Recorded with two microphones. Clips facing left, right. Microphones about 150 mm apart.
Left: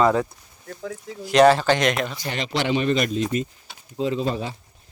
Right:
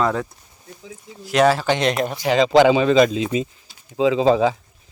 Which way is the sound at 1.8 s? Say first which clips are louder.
Right 2 dB; 35° right (ahead or behind).